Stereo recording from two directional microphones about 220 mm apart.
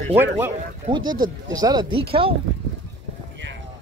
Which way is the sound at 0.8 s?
20° right (ahead or behind).